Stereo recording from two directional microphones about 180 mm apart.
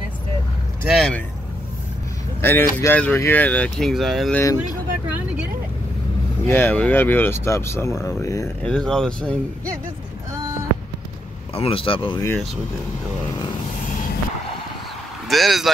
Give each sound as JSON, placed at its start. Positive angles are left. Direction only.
{"t": 0.8, "sound": "speech", "side_deg": 0}
{"t": 2.4, "sound": "speech", "side_deg": 10}
{"t": 4.4, "sound": "speech", "side_deg": 20}
{"t": 6.4, "sound": "speech", "side_deg": 10}
{"t": 8.6, "sound": "speech", "side_deg": 5}
{"t": 11.5, "sound": "speech", "side_deg": 30}
{"t": 15.2, "sound": "speech", "side_deg": 0}